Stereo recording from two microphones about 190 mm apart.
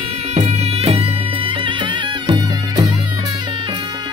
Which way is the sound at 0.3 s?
35° right (ahead or behind).